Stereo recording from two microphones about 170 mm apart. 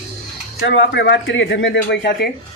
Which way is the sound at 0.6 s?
90° left.